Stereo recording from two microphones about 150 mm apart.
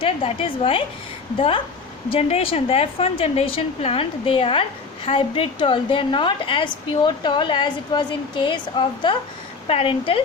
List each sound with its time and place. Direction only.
0.0 s a woman's voice: 35° left (ahead or behind)